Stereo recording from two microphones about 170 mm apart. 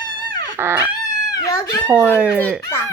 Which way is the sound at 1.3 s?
20° left (ahead or behind).